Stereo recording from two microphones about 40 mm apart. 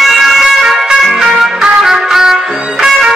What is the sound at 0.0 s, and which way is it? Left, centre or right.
Music, centre.